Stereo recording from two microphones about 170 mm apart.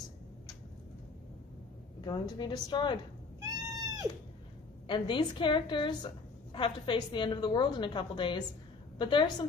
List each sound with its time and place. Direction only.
2.0 s a woman's voice: 25° left (ahead or behind)
3.3 s cat: 20° right (ahead or behind)
4.8 s a woman's voice: 30° left (ahead or behind)